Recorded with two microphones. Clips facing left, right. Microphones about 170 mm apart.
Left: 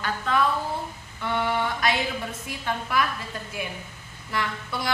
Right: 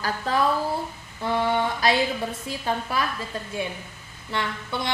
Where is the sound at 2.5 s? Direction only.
30° right (ahead or behind).